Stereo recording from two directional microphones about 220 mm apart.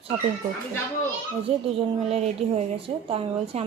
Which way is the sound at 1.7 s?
30° right (ahead or behind).